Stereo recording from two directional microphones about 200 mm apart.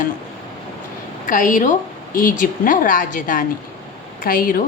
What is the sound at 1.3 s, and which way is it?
A woman's voice, 40° left (ahead or behind).